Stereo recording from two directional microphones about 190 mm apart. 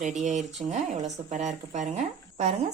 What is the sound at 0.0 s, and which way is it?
Speech, 40° right (ahead or behind).